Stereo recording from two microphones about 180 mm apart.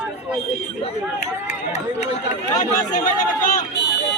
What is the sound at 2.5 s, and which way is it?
Speech, 45° left (ahead or behind).